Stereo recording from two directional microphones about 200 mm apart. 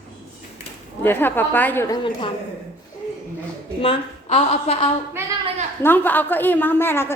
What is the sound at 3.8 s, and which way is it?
A woman's voice, 25° left (ahead or behind).